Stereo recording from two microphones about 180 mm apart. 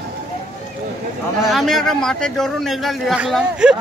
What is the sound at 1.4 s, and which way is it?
A man's voice, centre (ahead or behind).